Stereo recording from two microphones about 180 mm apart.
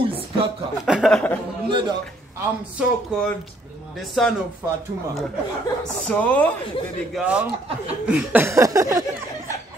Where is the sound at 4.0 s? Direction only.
Centre (ahead or behind).